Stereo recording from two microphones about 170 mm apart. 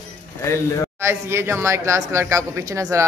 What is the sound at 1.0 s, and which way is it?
Speech, 15° right (ahead or behind).